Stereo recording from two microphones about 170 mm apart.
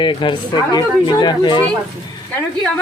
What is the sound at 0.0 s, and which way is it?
Speech, 30° left (ahead or behind).